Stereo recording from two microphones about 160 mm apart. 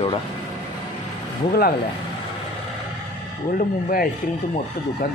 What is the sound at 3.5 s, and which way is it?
Speech, 75° left (ahead or behind).